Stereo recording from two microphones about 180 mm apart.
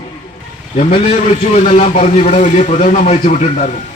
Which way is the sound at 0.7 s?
40° left (ahead or behind).